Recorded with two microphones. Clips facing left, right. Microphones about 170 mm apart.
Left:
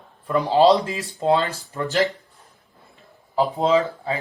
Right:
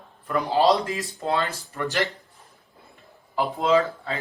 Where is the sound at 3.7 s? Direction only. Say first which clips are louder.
Left 1 dB; 20° left (ahead or behind).